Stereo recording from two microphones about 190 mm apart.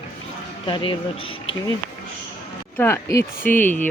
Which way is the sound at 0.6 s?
25° left (ahead or behind).